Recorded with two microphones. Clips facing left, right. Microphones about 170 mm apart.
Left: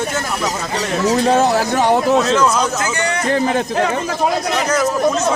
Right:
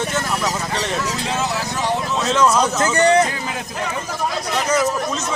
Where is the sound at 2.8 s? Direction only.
30° right (ahead or behind).